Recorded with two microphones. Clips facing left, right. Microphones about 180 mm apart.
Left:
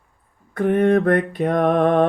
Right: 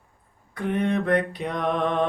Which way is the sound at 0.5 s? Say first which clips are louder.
Left 8 dB; 50° left (ahead or behind).